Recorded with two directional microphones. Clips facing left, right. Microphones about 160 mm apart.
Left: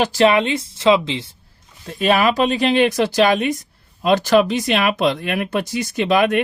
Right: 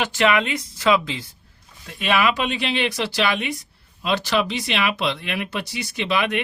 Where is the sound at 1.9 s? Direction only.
40° left (ahead or behind).